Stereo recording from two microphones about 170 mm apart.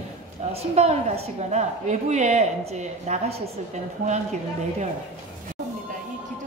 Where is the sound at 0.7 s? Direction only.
40° right (ahead or behind).